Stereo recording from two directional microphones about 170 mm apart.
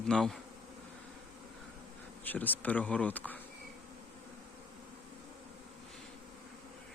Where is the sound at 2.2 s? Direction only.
10° left (ahead or behind).